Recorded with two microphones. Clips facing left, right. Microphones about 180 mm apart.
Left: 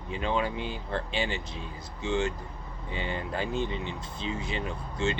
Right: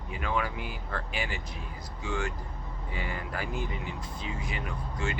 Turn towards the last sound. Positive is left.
turn(degrees=25)  # may be behind; listen again after turning